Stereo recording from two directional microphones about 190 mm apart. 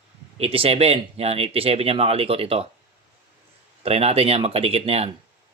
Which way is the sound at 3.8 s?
30° right (ahead or behind).